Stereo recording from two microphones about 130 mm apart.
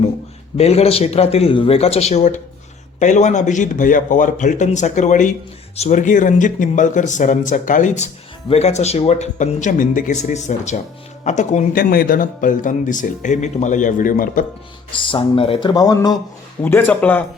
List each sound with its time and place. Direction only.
0.5 s speech: 50° left (ahead or behind); by 14.4 s 90° left
15.0 s speech: 45° left (ahead or behind)
15.7 s speech: 30° left (ahead or behind)
16.6 s speech: 15° left (ahead or behind)